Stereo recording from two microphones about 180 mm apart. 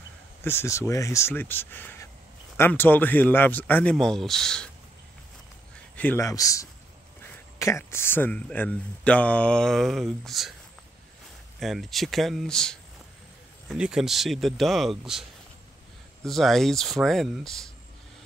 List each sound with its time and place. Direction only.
0.4 s speech: 15° left (ahead or behind)
5.9 s speech: 10° left (ahead or behind)
11.6 s speech: centre (ahead or behind)
16.3 s speech: centre (ahead or behind)